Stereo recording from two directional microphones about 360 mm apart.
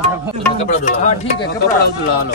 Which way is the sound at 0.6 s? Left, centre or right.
Centre.